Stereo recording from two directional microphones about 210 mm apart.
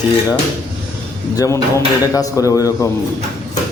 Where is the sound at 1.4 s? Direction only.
15° left (ahead or behind).